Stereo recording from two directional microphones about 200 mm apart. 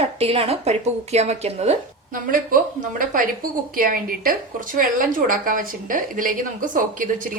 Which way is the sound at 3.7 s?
45° right (ahead or behind).